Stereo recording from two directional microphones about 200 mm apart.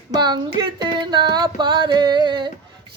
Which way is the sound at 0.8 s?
20° right (ahead or behind).